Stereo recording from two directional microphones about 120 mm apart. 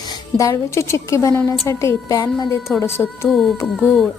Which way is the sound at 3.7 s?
Centre (ahead or behind).